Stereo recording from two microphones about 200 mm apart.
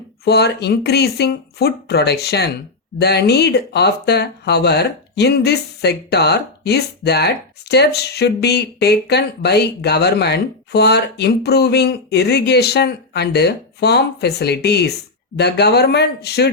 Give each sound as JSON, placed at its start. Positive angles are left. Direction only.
{"t": 0.3, "sound": "speech", "side_deg": 55}